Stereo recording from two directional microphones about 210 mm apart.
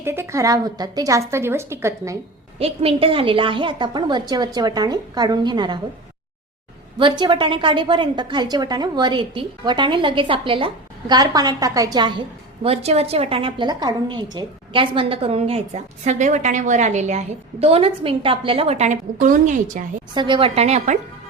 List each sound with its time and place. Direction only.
0.0 s a woman's voice: 10° right (ahead or behind)
2.6 s a woman's voice: 25° right (ahead or behind)
7.0 s a woman's voice: 20° right (ahead or behind)
20.1 s a woman's voice: 25° right (ahead or behind)